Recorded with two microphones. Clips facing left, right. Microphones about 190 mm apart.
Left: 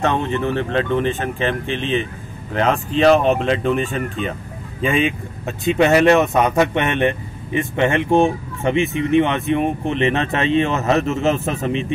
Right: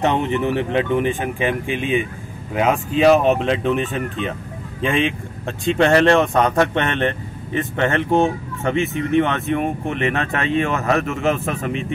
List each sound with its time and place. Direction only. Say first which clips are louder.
0.0 s speech: right 1 dB; 15° right (ahead or behind); by 11.8 s 25° left (ahead or behind)